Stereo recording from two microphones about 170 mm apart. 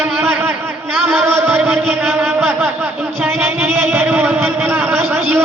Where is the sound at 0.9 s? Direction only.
10° right (ahead or behind).